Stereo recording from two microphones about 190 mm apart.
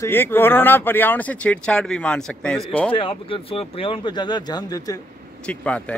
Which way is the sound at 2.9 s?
30° left (ahead or behind).